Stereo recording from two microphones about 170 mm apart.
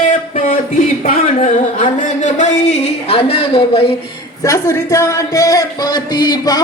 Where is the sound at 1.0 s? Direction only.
50° left (ahead or behind); by 3.9 s 35° left (ahead or behind).